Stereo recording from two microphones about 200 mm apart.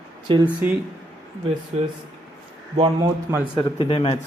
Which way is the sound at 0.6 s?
10° right (ahead or behind).